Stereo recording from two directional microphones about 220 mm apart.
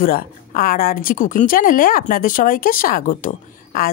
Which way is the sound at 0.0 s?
40° left (ahead or behind).